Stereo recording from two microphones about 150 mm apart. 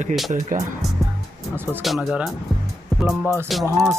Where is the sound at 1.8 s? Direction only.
Centre (ahead or behind).